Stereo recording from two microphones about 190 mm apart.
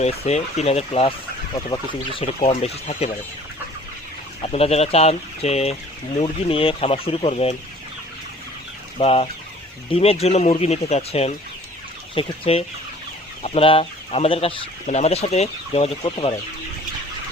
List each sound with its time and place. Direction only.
0.0 s speech: 35° left (ahead or behind)
4.4 s speech: 30° left (ahead or behind)
9.0 s speech: 30° left (ahead or behind)